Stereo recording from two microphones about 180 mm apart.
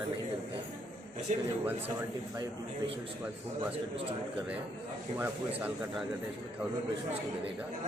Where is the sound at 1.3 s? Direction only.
40° right (ahead or behind).